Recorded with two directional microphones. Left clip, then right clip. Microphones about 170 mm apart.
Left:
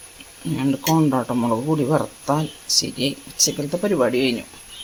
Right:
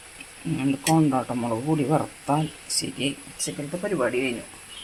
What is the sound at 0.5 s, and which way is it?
Speech, 25° left (ahead or behind).